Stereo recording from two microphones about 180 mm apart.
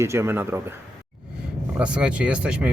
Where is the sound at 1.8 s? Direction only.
5° right (ahead or behind).